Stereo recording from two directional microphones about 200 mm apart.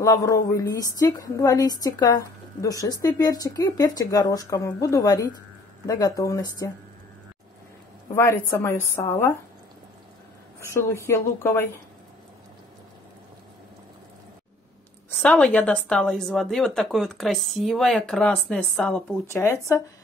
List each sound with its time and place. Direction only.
0.0 s a woman's voice: 15° left (ahead or behind)
8.1 s a woman's voice: 15° left (ahead or behind)
10.6 s a woman's voice: 15° left (ahead or behind)
15.0 s a woman's voice: 5° left (ahead or behind)